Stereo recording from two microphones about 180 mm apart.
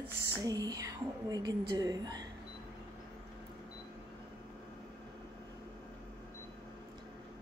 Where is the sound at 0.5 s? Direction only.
20° right (ahead or behind).